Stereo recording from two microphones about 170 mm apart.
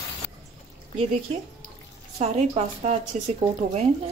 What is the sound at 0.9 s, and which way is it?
A woman's voice, 40° right (ahead or behind).